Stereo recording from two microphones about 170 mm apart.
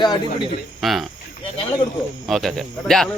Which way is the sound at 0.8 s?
Centre (ahead or behind).